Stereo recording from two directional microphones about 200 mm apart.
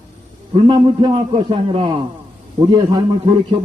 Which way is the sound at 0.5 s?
25° right (ahead or behind).